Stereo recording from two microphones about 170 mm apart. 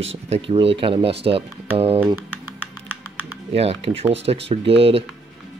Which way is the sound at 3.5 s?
35° right (ahead or behind).